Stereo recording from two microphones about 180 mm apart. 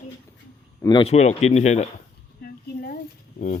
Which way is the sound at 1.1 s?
40° left (ahead or behind).